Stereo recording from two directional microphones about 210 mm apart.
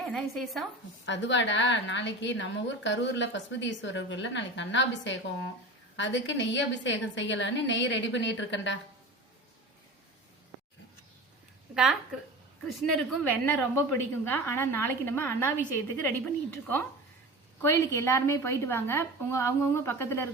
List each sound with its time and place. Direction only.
0.1 s speech: centre (ahead or behind)
1.0 s a woman's voice: 60° left (ahead or behind)
11.7 s a woman's voice: 5° right (ahead or behind)